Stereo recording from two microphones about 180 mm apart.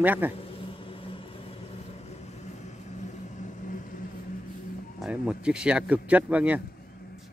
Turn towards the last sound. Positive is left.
turn(degrees=-10)  # may be behind; listen again after turning